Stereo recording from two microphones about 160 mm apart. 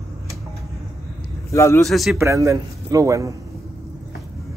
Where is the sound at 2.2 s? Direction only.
20° right (ahead or behind).